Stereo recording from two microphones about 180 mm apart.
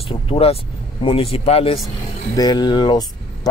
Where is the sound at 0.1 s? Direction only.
30° left (ahead or behind).